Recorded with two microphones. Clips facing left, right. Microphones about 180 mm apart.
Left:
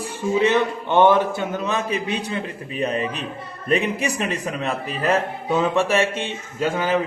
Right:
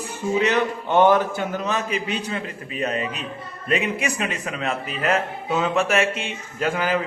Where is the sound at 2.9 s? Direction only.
35° left (ahead or behind).